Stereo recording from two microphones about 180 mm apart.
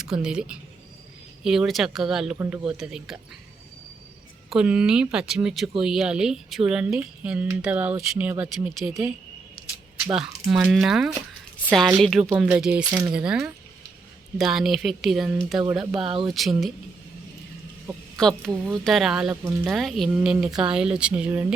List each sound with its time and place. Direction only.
0.0 s speech: 5° right (ahead or behind)
4.4 s speech: 5° right (ahead or behind)
10.2 s speech: 5° right (ahead or behind)
12.8 s speech: 15° right (ahead or behind)
13.1 s speech: 5° right (ahead or behind)
16.0 s speech: 30° right (ahead or behind)
16.3 s speech: centre (ahead or behind)
17.8 s speech: 5° left (ahead or behind)